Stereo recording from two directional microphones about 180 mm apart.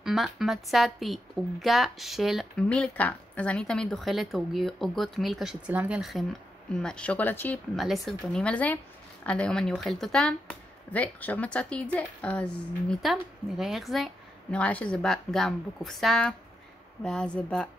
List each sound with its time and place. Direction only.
0.0 s speech: centre (ahead or behind)